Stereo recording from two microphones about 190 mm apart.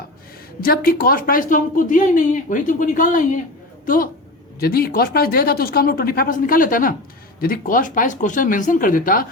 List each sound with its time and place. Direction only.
0.6 s speech: 50° left (ahead or behind)